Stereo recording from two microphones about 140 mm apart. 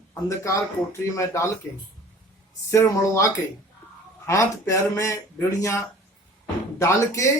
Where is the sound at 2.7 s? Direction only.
20° left (ahead or behind).